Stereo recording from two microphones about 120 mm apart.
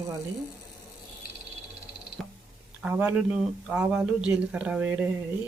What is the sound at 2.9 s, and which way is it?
Speech, 15° right (ahead or behind).